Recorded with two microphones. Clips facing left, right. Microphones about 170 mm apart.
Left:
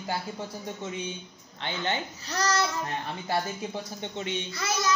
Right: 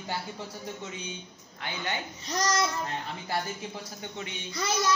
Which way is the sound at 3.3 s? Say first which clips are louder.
Left 4 dB; 25° left (ahead or behind).